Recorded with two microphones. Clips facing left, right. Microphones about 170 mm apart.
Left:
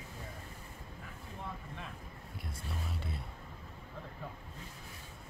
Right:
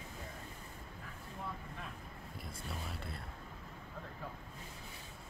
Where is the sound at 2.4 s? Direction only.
Centre (ahead or behind).